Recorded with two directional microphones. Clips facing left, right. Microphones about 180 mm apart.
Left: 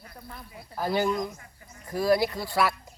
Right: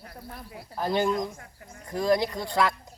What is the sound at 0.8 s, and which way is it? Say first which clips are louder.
Speech: right 1 dB; 5° left (ahead or behind).